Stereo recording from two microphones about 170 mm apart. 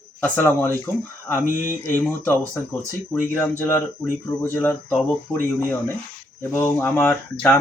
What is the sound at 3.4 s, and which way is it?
Speech, 15° left (ahead or behind).